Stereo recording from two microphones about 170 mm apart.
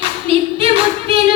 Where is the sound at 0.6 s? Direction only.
35° right (ahead or behind).